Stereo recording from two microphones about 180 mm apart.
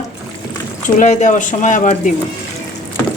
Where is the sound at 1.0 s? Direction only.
45° left (ahead or behind).